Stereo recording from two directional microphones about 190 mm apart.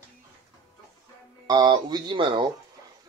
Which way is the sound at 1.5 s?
20° right (ahead or behind).